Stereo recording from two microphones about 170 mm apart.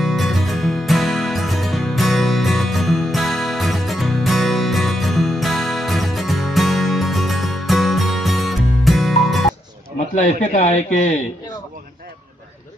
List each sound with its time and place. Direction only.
0.0 s music: centre (ahead or behind)
10.5 s speech: 45° left (ahead or behind)